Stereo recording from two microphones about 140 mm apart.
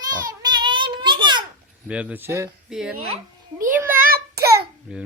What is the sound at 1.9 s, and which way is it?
Speech, 10° right (ahead or behind).